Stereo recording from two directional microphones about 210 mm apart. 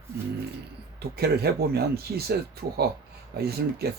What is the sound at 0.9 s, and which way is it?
Speech, 50° right (ahead or behind).